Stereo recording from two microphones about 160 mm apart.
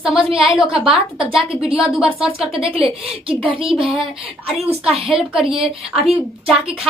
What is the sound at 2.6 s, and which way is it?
A woman's voice, 35° right (ahead or behind).